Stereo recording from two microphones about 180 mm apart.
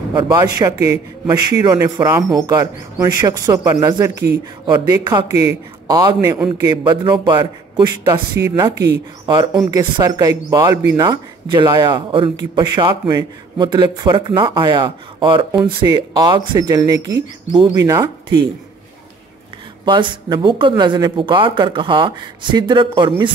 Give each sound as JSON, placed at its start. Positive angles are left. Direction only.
{"t": 0.1, "sound": "a man's voice", "side_deg": -25}
{"t": 19.8, "sound": "a man's voice", "side_deg": -25}